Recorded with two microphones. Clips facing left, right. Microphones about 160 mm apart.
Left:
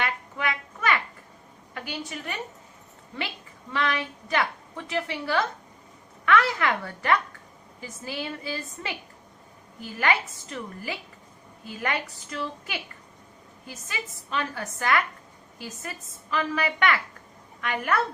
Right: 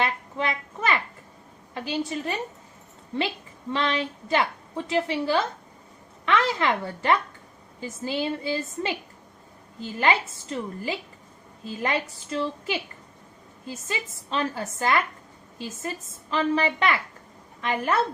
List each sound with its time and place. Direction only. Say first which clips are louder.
0.0 s a sound: right 3 dB; 30° right (ahead or behind)
1.7 s a woman's voice: right 7 dB; 30° right (ahead or behind)
3.7 s a woman's voice: right 2 dB; 25° right (ahead or behind)